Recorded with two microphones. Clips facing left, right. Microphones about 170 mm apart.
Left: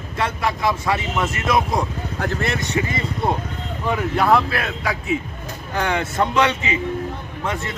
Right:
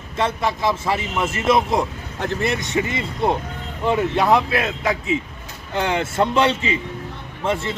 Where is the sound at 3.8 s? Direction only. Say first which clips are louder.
Right 2 dB; 25° right (ahead or behind).